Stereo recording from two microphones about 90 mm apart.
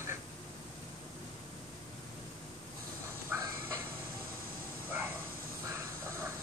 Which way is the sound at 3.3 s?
20° right (ahead or behind).